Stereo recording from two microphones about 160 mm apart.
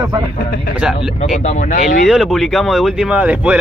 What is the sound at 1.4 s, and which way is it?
Speech, 50° left (ahead or behind).